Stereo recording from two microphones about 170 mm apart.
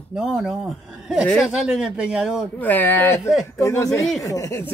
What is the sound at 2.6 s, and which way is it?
Speech, 10° left (ahead or behind).